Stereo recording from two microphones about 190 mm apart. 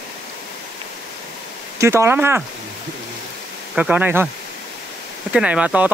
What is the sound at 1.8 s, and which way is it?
Speech, 15° right (ahead or behind).